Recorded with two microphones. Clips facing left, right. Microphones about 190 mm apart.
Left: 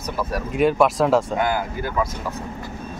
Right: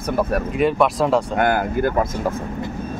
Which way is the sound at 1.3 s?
55° right (ahead or behind).